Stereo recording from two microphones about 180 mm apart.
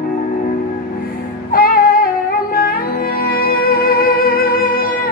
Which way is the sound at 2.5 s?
55° left (ahead or behind).